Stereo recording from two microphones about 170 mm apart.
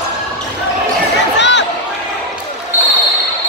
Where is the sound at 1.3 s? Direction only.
90° left.